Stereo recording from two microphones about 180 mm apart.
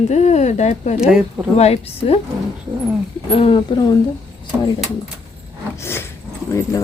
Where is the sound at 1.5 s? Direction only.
35° left (ahead or behind).